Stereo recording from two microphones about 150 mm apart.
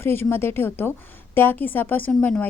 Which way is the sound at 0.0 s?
15° left (ahead or behind).